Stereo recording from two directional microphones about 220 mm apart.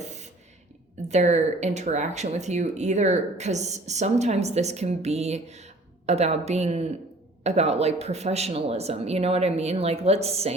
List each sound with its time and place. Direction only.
1.0 s speech: 30° right (ahead or behind)